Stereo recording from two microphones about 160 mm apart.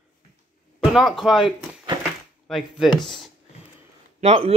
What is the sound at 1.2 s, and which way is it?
Speech, centre (ahead or behind).